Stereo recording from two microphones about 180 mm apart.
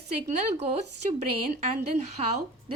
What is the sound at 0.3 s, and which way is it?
A woman's voice, 40° right (ahead or behind).